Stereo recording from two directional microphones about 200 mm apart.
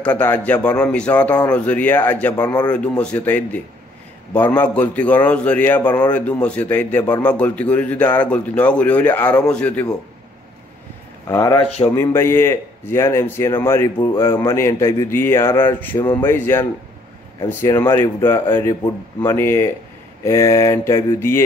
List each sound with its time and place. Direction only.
0.0 s a man's voice: 5° left (ahead or behind)
2.3 s speech: 20° left (ahead or behind)
2.7 s a man's voice: 5° left (ahead or behind)
11.2 s a man's voice: 15° left (ahead or behind)